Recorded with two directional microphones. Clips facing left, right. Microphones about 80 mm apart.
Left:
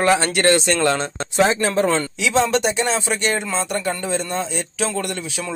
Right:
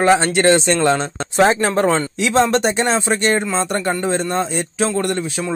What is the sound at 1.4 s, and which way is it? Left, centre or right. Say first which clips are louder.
Speech: right 3 dB; right.